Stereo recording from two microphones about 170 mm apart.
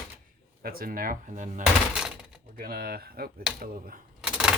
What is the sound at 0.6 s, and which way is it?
Speech, 60° right (ahead or behind).